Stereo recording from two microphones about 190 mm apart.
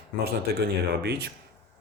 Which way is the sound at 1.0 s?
60° right (ahead or behind).